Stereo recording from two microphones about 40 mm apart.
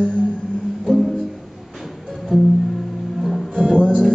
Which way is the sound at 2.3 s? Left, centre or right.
Centre.